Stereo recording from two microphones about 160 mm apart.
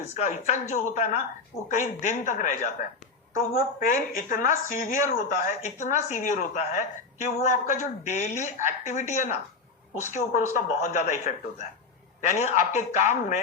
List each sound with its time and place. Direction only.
0.1 s a woman's voice: 45° left (ahead or behind)
3.3 s a woman's voice: 65° left (ahead or behind); by 13.4 s 50° left (ahead or behind)